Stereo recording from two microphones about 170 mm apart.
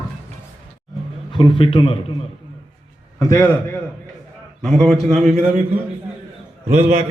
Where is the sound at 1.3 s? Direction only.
30° left (ahead or behind).